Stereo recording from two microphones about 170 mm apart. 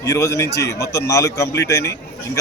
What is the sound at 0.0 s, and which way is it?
A man's voice, 20° left (ahead or behind).